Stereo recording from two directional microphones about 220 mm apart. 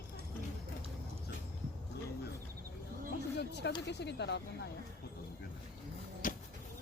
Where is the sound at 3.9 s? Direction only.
50° left (ahead or behind).